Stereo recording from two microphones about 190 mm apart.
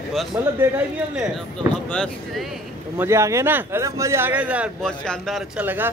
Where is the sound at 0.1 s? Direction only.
Centre (ahead or behind).